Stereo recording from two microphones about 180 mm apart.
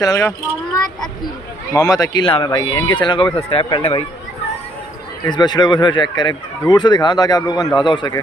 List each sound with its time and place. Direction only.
0.0 s speech: 15° left (ahead or behind)
1.8 s speech: 20° left (ahead or behind)
5.2 s speech: 25° left (ahead or behind)